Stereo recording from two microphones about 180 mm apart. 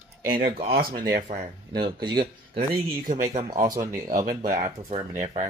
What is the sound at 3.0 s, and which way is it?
Speech, 45° right (ahead or behind).